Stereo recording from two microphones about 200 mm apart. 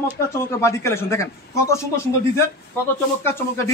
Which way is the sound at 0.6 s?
15° left (ahead or behind).